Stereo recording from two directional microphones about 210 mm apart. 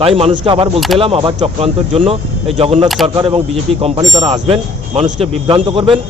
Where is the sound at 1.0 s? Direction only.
25° right (ahead or behind).